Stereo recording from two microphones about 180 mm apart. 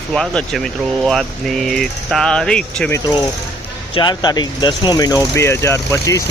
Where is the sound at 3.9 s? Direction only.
25° left (ahead or behind).